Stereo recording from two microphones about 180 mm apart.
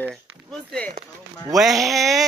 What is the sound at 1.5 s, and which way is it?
Speech, centre (ahead or behind).